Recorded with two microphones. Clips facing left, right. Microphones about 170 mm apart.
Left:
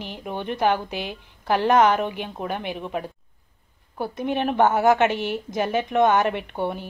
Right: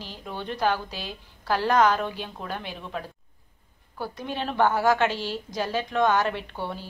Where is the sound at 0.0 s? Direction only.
20° left (ahead or behind).